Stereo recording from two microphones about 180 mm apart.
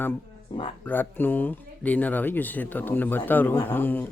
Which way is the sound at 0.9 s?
10° left (ahead or behind).